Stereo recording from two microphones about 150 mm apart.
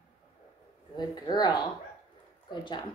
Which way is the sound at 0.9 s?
30° left (ahead or behind).